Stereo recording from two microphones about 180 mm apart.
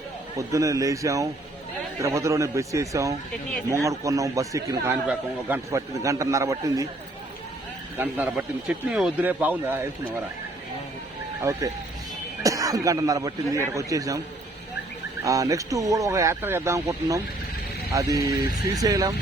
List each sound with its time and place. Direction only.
0.3 s speech: 20° right (ahead or behind)
7.9 s speech: 10° right (ahead or behind)
11.5 s speech: 15° right (ahead or behind)
15.2 s speech: 20° right (ahead or behind)